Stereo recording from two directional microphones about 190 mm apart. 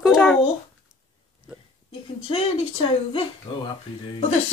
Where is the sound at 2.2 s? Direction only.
30° left (ahead or behind).